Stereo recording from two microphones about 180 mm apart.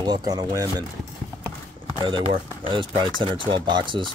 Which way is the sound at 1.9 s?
25° right (ahead or behind).